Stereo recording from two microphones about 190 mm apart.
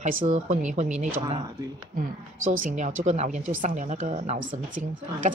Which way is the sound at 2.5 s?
40° right (ahead or behind).